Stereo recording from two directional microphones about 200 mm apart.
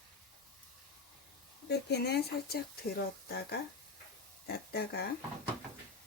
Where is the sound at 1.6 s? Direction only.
55° left (ahead or behind).